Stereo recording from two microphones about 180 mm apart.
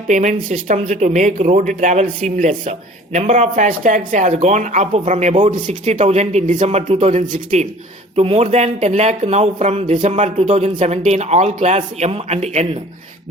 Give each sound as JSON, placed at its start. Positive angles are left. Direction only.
{"t": 0.1, "sound": "speech", "side_deg": -45}